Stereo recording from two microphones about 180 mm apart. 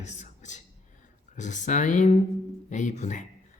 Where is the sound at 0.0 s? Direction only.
40° left (ahead or behind).